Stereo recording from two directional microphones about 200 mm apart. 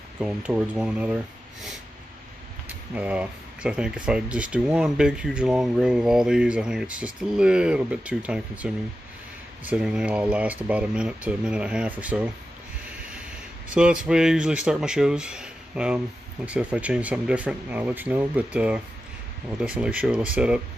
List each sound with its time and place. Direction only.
0.2 s speech: 5° right (ahead or behind)
2.9 s speech: 5° right (ahead or behind)
13.7 s speech: 5° right (ahead or behind)